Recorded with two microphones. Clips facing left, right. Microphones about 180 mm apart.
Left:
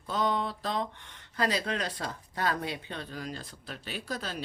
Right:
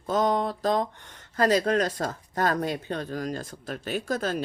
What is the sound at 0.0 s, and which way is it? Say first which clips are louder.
Speech: right 6 dB; 45° right (ahead or behind).